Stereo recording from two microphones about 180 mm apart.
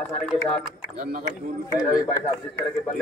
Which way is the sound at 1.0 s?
50° right (ahead or behind).